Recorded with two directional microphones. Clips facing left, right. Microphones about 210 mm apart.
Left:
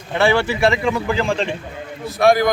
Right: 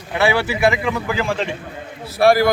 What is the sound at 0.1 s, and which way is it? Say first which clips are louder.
Speech: left 1 dB; 5° right (ahead or behind).